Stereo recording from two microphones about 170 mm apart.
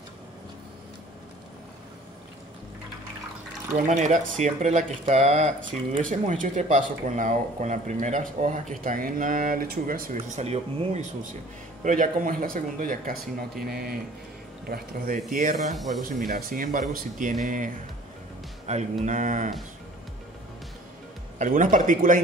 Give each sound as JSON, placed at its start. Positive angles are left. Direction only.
{"t": 3.7, "sound": "speech", "side_deg": -45}
{"t": 10.1, "sound": "speech", "side_deg": -40}
{"t": 11.8, "sound": "speech", "side_deg": -50}
{"t": 15.7, "sound": "speech", "side_deg": 0}
{"t": 16.0, "sound": "speech", "side_deg": -55}
{"t": 18.7, "sound": "speech", "side_deg": -40}
{"t": 21.4, "sound": "speech", "side_deg": -50}